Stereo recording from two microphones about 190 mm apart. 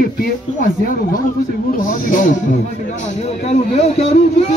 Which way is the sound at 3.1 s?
35° left (ahead or behind).